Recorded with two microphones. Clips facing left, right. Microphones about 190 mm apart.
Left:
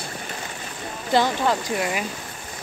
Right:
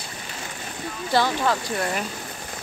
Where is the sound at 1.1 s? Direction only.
15° left (ahead or behind).